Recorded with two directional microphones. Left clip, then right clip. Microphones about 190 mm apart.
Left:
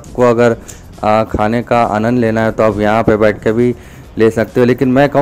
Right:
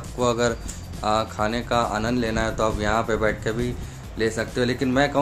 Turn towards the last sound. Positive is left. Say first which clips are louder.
# left 11 dB
turn(degrees=40)  # may be behind; listen again after turning